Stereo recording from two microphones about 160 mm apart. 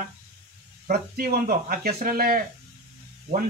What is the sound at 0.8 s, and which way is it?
Speech, 65° right (ahead or behind).